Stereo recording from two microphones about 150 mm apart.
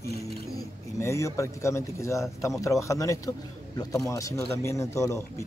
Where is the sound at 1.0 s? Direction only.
20° left (ahead or behind).